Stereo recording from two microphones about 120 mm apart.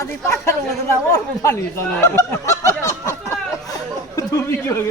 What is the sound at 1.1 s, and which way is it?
Snicker, 25° left (ahead or behind).